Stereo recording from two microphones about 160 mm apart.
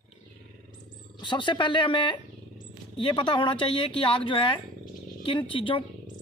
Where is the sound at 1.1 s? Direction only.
30° left (ahead or behind).